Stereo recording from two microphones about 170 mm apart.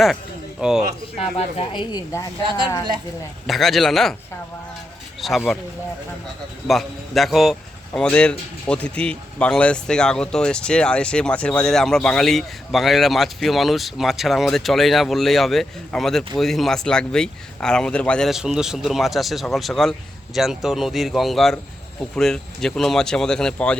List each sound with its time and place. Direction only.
0.6 s speech: 5° right (ahead or behind)
1.2 s speech: 35° left (ahead or behind)
2.4 s speech: 30° right (ahead or behind)
3.4 s speech: centre (ahead or behind)
5.2 s speech: centre (ahead or behind)
6.7 s speech: centre (ahead or behind)